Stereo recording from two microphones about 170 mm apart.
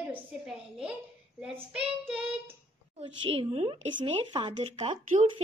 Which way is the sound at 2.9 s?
30° right (ahead or behind).